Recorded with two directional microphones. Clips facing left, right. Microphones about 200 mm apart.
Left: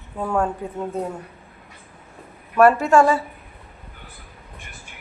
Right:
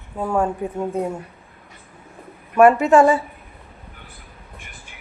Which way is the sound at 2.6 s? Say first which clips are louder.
Right 2 dB; 15° right (ahead or behind).